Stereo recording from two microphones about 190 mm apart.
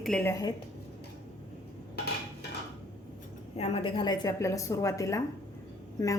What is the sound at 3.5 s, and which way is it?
Speech, 30° left (ahead or behind).